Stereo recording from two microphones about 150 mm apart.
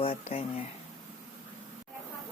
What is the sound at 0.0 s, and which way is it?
Speech, 40° left (ahead or behind).